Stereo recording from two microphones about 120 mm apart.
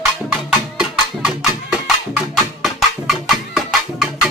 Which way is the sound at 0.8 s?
5° right (ahead or behind).